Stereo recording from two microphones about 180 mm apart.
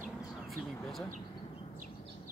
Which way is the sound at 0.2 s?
Centre (ahead or behind).